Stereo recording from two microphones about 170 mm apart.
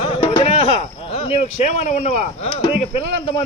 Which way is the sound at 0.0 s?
35° left (ahead or behind).